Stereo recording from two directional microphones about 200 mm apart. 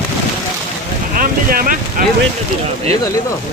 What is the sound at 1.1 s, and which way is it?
Boat, 45° right (ahead or behind).